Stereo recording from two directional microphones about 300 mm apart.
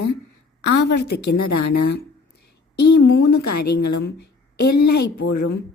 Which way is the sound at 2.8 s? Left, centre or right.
Left.